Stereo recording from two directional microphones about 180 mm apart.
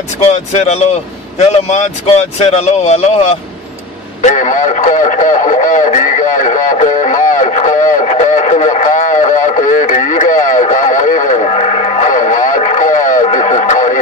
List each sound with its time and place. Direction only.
0.3 s speech: 40° left (ahead or behind)
4.2 s radio: 45° left (ahead or behind)